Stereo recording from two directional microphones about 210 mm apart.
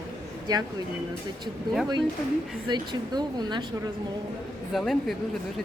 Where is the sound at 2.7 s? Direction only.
20° right (ahead or behind).